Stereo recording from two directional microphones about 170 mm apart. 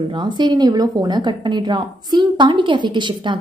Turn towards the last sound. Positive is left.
turn(degrees=-30)  # may be behind; listen again after turning